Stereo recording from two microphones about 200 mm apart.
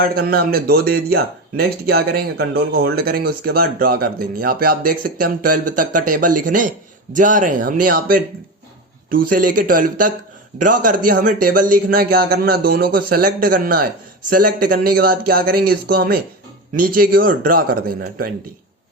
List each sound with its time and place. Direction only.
0.0 s speech: 50° right (ahead or behind)